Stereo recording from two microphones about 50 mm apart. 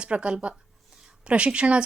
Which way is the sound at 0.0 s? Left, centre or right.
Right.